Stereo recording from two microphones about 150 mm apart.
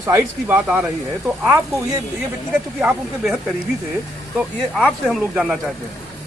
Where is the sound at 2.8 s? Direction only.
10° right (ahead or behind).